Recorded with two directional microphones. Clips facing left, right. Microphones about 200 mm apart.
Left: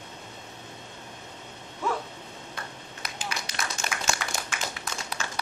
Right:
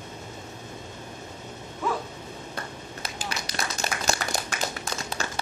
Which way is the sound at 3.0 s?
35° right (ahead or behind).